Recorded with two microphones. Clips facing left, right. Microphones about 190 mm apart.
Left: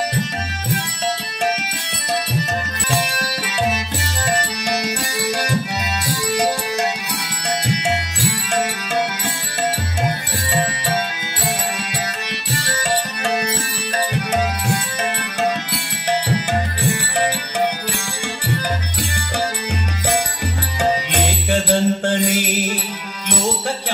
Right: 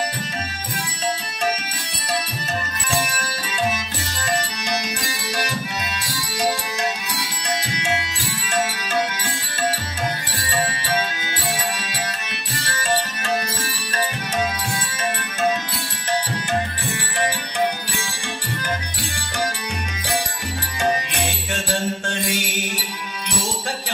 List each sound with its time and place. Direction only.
4.4 s music: 65° left (ahead or behind)
13.2 s music: 65° left (ahead or behind)
21.1 s music: 65° left (ahead or behind)